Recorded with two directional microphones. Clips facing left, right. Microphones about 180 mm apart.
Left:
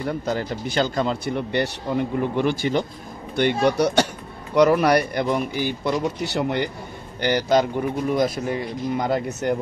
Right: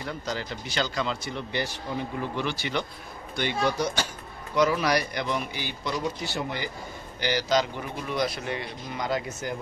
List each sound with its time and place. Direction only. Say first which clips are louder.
0.0 s speech: left 8 dB; 50° left (ahead or behind)
3.3 s speech: left 8 dB; 60° left (ahead or behind)
6.2 s speech: left 8 dB; 65° left (ahead or behind)
7.2 s speech: left 6 dB; 55° left (ahead or behind)